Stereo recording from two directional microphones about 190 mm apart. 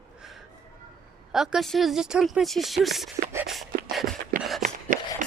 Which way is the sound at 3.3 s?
10° right (ahead or behind).